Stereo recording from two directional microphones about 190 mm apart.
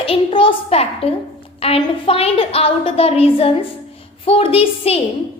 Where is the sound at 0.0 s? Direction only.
30° left (ahead or behind).